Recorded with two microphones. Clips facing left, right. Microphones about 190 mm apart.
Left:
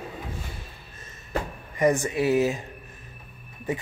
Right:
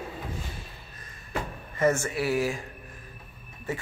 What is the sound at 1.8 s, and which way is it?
Speech, 15° left (ahead or behind).